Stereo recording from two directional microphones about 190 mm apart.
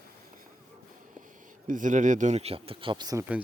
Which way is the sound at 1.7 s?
45° right (ahead or behind).